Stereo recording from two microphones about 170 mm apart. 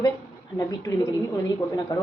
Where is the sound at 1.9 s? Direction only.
25° left (ahead or behind).